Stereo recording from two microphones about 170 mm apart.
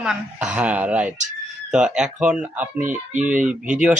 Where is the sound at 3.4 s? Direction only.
5° right (ahead or behind).